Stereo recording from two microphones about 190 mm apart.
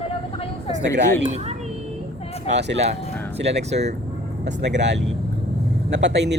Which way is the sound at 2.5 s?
65° right (ahead or behind).